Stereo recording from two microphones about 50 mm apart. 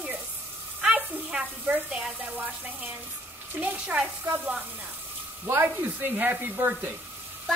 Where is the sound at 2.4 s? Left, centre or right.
Right.